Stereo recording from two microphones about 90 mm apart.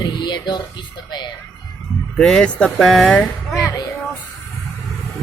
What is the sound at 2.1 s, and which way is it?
Speech, 10° left (ahead or behind).